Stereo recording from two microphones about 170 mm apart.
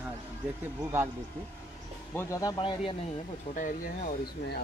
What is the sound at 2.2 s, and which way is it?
Speech, 20° left (ahead or behind).